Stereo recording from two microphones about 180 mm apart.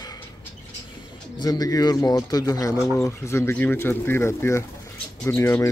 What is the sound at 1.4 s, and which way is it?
A man's voice, 20° left (ahead or behind).